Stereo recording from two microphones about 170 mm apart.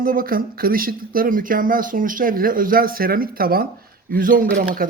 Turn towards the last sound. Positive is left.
turn(degrees=-55)  # may be behind; listen again after turning